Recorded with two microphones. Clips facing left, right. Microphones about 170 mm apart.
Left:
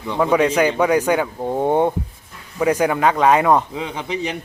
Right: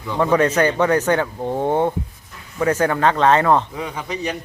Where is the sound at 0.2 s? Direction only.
10° left (ahead or behind).